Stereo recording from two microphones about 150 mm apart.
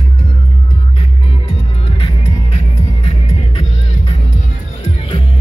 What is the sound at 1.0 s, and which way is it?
Music, 40° left (ahead or behind).